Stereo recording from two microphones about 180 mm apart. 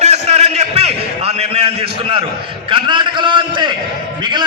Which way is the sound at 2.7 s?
25° right (ahead or behind).